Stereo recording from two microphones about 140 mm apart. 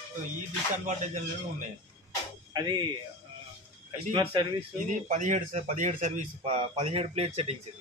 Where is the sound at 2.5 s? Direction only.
30° right (ahead or behind).